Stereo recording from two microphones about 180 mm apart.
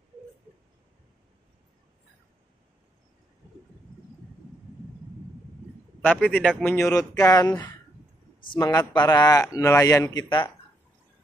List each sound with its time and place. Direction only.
6.0 s a man's voice: 5° left (ahead or behind)